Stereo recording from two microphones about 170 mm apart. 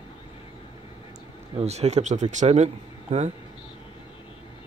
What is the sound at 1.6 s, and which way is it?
Speech, 40° right (ahead or behind).